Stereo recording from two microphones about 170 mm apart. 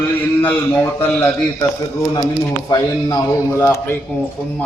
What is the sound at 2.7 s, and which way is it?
A man's voice, 20° left (ahead or behind).